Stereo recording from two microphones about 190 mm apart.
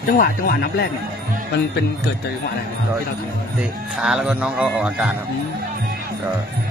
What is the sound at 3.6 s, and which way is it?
A man's voice, 5° right (ahead or behind).